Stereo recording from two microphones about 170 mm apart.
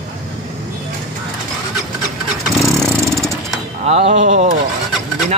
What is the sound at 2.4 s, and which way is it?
Vehicle, centre (ahead or behind).